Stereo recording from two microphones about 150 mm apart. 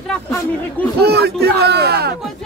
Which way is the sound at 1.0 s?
90° right.